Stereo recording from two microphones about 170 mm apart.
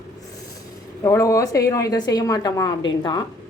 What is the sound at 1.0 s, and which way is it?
A woman's voice, 20° left (ahead or behind).